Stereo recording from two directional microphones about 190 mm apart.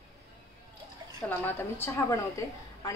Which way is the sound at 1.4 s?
10° left (ahead or behind).